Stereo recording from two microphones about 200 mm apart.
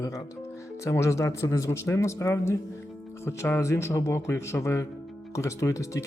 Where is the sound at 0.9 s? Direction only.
15° left (ahead or behind).